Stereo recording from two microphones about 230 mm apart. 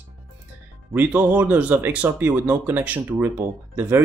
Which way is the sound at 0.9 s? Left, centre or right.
Centre.